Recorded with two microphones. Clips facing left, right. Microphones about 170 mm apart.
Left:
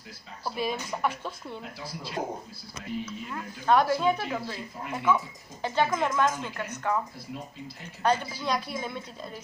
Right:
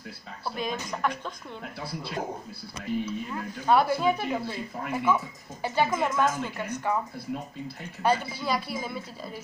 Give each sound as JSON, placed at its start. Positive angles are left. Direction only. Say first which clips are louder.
{"t": 0.6, "sound": "speech", "louder": "left 1 dB", "side_deg": 5}
{"t": 1.6, "sound": "speech", "louder": "right 3 dB", "side_deg": -60}
{"t": 3.1, "sound": "speech", "louder": "right 4 dB", "side_deg": -10}
{"t": 8.0, "sound": "a woman's voice", "louder": "right 1 dB", "side_deg": -5}